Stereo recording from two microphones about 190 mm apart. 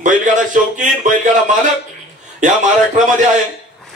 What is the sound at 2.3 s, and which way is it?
Speech, 40° right (ahead or behind).